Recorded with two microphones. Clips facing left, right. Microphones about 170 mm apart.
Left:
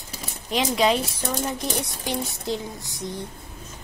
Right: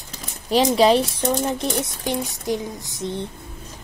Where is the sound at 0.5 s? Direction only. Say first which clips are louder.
Right 6 dB; 35° right (ahead or behind).